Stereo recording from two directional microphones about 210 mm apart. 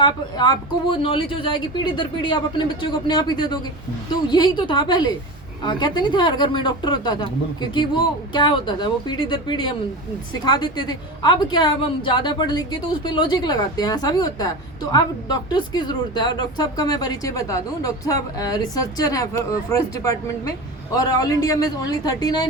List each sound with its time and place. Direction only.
0.0 s a woman's voice: 20° left (ahead or behind)
8.3 s a woman's voice: 20° left (ahead or behind)
20.9 s a woman's voice: 15° left (ahead or behind)